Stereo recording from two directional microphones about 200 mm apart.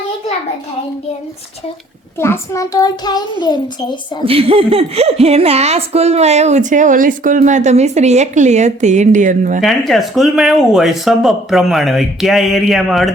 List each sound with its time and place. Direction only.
2.1 s a child's voice: 10° left (ahead or behind)
4.3 s a woman's voice: 30° right (ahead or behind)
9.6 s speech: centre (ahead or behind)